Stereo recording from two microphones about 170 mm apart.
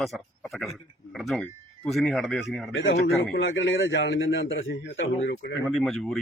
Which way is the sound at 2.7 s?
90° left.